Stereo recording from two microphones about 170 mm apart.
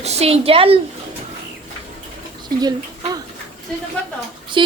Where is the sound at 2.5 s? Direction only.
25° right (ahead or behind).